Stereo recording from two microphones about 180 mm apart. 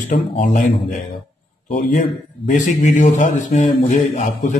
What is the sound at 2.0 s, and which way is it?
A man's voice, 40° left (ahead or behind).